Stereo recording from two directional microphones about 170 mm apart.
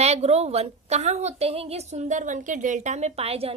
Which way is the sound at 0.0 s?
40° right (ahead or behind).